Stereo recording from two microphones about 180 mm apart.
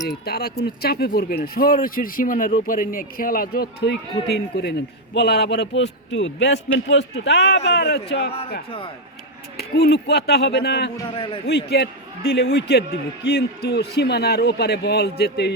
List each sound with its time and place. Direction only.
0.3 s a man's voice: 60° left (ahead or behind)
9.6 s a man's voice: 65° left (ahead or behind)
11.1 s a man's voice: 30° left (ahead or behind)
11.4 s a man's voice: 65° left (ahead or behind)